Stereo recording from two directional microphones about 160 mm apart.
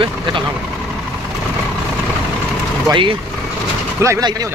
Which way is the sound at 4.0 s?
20° right (ahead or behind).